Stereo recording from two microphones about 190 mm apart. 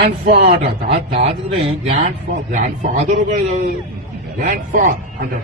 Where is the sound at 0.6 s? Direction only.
35° right (ahead or behind).